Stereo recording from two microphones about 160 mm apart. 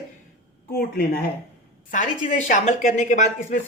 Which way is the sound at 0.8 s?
75° left (ahead or behind).